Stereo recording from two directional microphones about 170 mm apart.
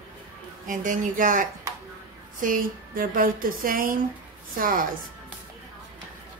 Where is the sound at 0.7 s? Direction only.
50° right (ahead or behind).